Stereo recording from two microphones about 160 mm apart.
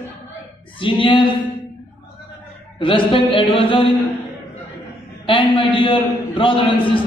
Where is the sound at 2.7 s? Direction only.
30° left (ahead or behind).